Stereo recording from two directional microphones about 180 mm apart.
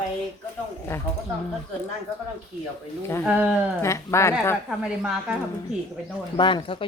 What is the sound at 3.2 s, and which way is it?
Speech, 5° right (ahead or behind).